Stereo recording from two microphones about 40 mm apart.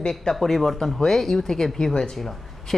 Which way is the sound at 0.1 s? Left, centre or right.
Centre.